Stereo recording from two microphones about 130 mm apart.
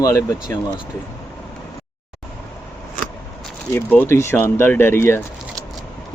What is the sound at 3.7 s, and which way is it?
Speech, 15° left (ahead or behind).